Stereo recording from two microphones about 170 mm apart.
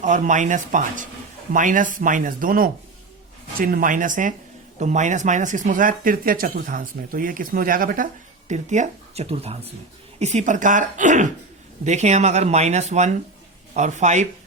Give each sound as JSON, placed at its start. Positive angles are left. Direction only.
{"t": 0.0, "sound": "speech", "side_deg": -45}
{"t": 8.4, "sound": "speech", "side_deg": -45}